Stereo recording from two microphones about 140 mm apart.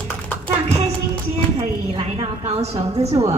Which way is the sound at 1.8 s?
50° right (ahead or behind).